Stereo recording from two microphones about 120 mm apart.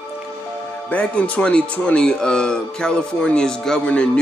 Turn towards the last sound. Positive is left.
turn(degrees=10)  # may be behind; listen again after turning